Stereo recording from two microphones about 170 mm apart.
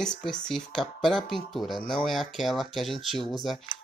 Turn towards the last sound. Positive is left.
turn(degrees=0)  # may be behind; listen again after turning